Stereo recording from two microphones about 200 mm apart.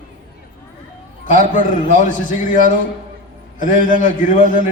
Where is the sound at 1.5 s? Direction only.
40° left (ahead or behind).